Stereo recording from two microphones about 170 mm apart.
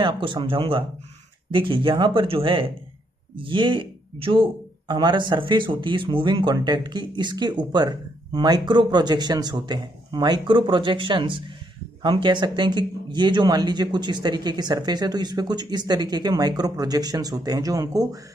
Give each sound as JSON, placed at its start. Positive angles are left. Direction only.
{"t": 0.0, "sound": "speech", "side_deg": -30}